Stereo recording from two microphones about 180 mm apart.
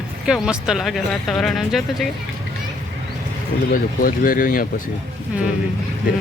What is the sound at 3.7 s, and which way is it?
Speech, 50° left (ahead or behind).